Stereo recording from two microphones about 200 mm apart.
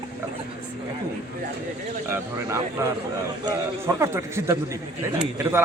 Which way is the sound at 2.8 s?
10° right (ahead or behind).